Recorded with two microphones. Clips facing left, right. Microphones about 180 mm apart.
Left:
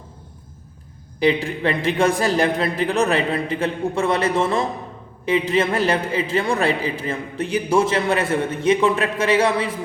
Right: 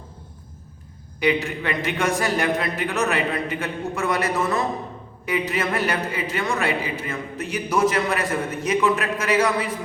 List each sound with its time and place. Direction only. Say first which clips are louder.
1.2 s a woman's voice: left 3 dB; 30° left (ahead or behind)